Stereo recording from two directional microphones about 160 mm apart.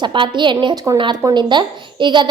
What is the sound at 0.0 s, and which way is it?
A woman's voice, 30° right (ahead or behind).